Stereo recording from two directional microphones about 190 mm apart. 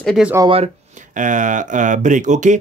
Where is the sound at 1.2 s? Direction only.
40° right (ahead or behind).